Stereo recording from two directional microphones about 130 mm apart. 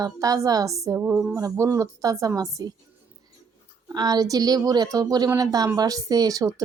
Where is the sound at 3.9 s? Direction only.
30° right (ahead or behind).